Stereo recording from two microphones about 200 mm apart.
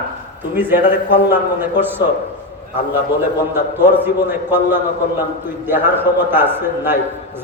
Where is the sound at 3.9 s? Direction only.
10° right (ahead or behind).